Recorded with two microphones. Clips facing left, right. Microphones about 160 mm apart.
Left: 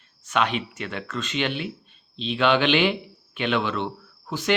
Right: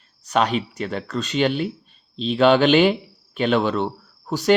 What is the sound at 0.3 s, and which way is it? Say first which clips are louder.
Speech: right 4 dB; 40° right (ahead or behind).